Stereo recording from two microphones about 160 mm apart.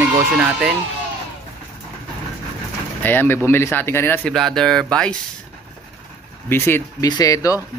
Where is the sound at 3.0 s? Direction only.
15° left (ahead or behind).